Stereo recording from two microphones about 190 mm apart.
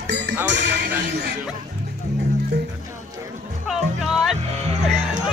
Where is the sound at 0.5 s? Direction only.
65° right (ahead or behind).